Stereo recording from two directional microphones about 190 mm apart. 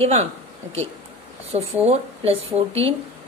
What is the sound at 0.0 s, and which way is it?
Speech, 35° right (ahead or behind).